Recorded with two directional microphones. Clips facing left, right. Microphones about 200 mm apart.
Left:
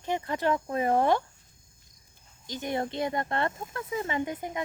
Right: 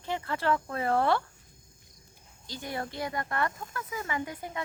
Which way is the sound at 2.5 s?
20° left (ahead or behind).